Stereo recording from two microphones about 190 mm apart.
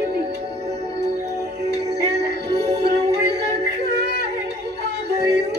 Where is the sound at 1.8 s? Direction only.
60° right (ahead or behind).